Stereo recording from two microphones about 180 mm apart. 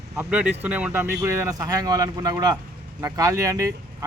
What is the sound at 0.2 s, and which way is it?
Speech, 5° right (ahead or behind).